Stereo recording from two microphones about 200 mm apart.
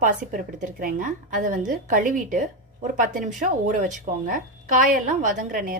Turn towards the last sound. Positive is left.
turn(degrees=-40)  # may be behind; listen again after turning